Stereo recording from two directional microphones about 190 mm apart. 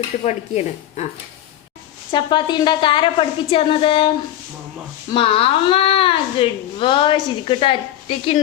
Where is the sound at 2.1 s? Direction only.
25° left (ahead or behind).